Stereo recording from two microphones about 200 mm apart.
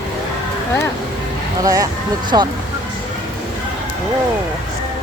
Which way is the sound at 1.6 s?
15° right (ahead or behind).